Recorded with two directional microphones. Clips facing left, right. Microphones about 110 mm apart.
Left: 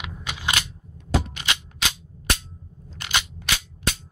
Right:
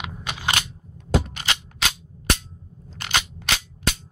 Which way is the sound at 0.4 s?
30° right (ahead or behind).